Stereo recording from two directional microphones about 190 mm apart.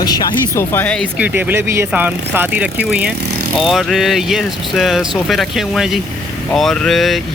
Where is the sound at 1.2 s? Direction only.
10° right (ahead or behind).